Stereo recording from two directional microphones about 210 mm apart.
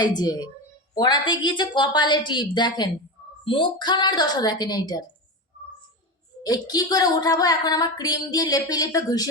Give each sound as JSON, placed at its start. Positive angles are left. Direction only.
{"t": 0.0, "sound": "a woman's voice", "side_deg": 20}
{"t": 6.4, "sound": "speech", "side_deg": 15}